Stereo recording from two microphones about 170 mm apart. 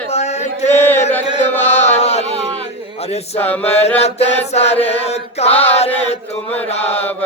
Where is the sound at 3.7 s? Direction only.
40° left (ahead or behind).